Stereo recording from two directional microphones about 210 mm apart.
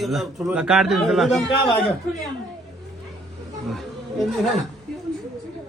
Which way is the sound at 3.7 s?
Centre (ahead or behind).